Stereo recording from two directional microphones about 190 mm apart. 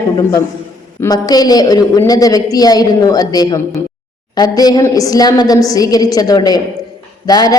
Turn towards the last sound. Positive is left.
turn(degrees=20)  # may be behind; listen again after turning